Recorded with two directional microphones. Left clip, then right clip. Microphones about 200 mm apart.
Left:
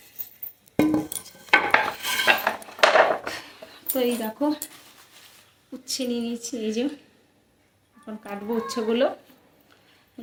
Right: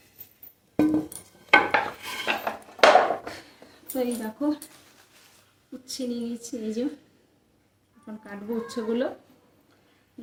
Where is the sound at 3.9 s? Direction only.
Centre (ahead or behind).